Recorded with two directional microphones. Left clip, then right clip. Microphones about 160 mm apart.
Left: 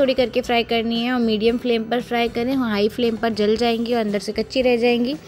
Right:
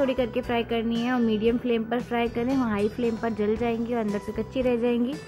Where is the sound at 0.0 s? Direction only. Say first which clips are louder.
Left 7 dB; 25° left (ahead or behind).